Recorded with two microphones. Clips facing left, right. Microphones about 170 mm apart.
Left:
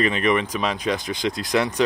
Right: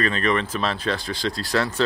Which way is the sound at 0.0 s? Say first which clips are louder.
Left 2 dB; 15° left (ahead or behind).